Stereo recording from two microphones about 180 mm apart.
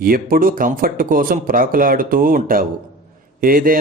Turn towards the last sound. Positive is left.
turn(degrees=-50)  # may be behind; listen again after turning